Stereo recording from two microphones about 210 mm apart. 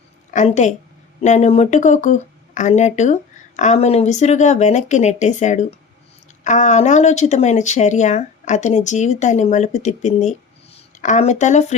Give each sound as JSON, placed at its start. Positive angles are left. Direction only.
{"t": 0.3, "sound": "speech", "side_deg": 35}